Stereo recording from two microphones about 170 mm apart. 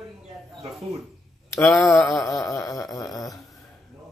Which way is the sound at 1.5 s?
5° left (ahead or behind).